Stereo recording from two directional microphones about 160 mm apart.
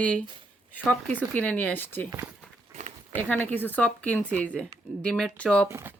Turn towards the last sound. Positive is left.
turn(degrees=-15)  # may be behind; listen again after turning